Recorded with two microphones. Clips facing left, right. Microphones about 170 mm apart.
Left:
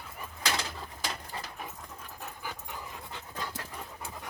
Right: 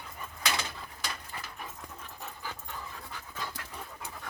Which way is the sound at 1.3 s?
30° left (ahead or behind).